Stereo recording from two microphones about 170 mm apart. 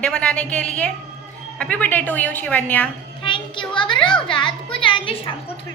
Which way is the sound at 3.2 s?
30° left (ahead or behind).